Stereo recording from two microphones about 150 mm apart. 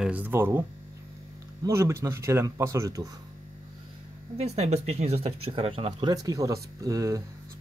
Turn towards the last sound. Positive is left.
turn(degrees=-20)  # may be behind; listen again after turning